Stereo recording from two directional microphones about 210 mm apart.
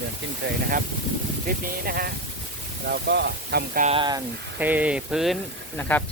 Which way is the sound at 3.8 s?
25° right (ahead or behind).